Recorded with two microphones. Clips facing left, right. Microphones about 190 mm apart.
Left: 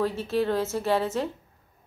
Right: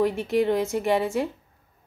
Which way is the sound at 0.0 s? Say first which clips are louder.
Right 3 dB; 15° right (ahead or behind).